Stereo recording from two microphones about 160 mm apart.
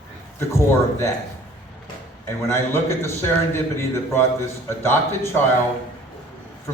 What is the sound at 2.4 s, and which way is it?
A man's voice, 15° left (ahead or behind).